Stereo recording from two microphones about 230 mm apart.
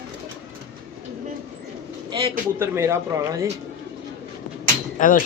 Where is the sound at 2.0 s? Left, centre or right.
Centre.